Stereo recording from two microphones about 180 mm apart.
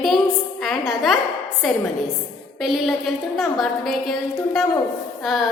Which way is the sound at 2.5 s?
Centre (ahead or behind).